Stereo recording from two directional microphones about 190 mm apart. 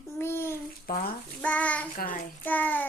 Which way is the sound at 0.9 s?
50° left (ahead or behind).